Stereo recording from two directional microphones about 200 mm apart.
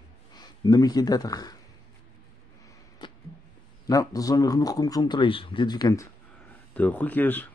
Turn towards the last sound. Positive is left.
turn(degrees=10)  # may be behind; listen again after turning